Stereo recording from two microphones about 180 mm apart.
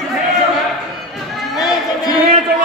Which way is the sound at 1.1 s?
Centre (ahead or behind).